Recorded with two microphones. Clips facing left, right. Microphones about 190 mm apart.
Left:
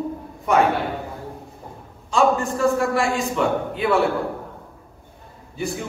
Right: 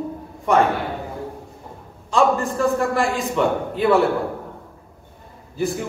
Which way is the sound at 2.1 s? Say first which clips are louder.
Right 1 dB; centre (ahead or behind).